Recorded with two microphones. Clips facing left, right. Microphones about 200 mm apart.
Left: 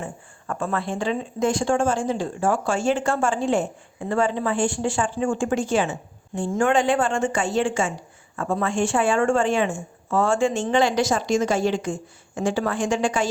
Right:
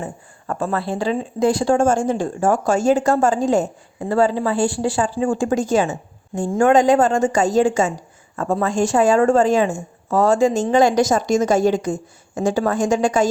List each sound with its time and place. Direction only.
0.0 s a woman's voice: 35° right (ahead or behind)